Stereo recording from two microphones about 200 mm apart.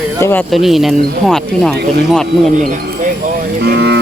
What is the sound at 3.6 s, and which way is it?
Speech, 55° right (ahead or behind).